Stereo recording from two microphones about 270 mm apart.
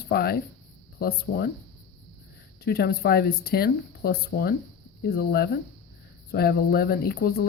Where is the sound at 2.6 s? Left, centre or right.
Left.